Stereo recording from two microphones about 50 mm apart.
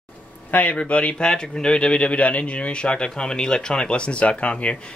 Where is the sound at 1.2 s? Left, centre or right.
Centre.